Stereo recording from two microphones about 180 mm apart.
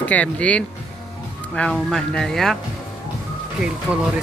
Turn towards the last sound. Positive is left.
turn(degrees=-5)  # may be behind; listen again after turning